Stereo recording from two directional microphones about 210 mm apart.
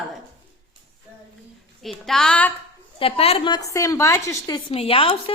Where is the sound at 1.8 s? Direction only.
Centre (ahead or behind).